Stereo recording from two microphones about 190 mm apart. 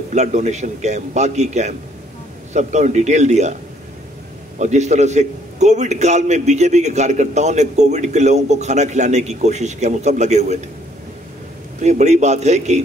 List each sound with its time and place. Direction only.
0.1 s a man's voice: 35° right (ahead or behind)
4.6 s a man's voice: 40° right (ahead or behind)
11.8 s a man's voice: 35° right (ahead or behind)